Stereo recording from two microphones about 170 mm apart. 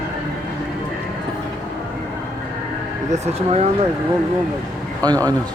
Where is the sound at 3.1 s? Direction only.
40° right (ahead or behind).